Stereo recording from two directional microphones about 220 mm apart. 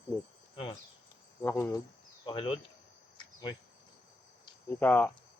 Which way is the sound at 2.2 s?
25° left (ahead or behind).